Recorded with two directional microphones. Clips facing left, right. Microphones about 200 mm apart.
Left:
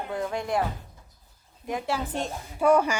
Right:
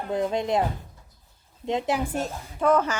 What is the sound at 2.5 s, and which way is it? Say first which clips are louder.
Speech: left 1 dB; 10° left (ahead or behind).